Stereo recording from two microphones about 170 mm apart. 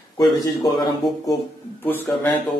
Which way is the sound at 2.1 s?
10° left (ahead or behind).